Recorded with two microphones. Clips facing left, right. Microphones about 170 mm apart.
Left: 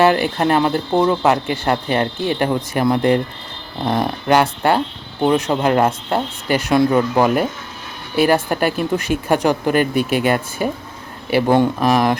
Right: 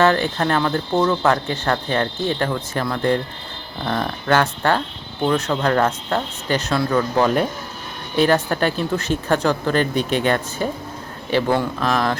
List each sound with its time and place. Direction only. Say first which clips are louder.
0.0 s speech: left 3 dB; 10° left (ahead or behind)